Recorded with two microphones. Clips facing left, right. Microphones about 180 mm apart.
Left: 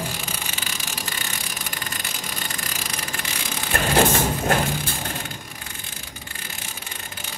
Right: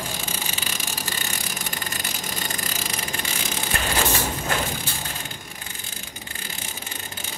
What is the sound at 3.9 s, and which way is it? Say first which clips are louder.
Crushing: left 7 dB; 50° left (ahead or behind).